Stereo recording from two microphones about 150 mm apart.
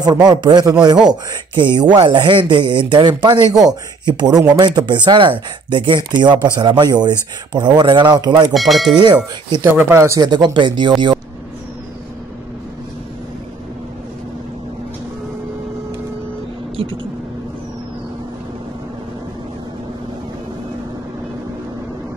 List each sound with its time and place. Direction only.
0.0 s speech: 25° right (ahead or behind)
8.5 s tubular bells: centre (ahead or behind)
8.9 s speech: 30° right (ahead or behind)
9.6 s speech: 15° right (ahead or behind); by 11.1 s 30° right (ahead or behind)